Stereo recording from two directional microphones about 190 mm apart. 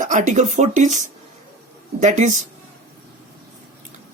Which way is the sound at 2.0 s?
40° right (ahead or behind).